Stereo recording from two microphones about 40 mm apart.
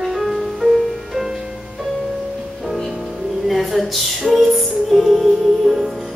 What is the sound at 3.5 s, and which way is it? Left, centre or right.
Music, centre.